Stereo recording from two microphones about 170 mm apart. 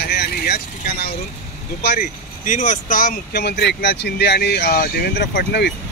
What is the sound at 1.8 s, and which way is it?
Speech, 70° left (ahead or behind).